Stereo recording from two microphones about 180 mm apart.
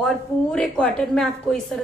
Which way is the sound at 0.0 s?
5° left (ahead or behind).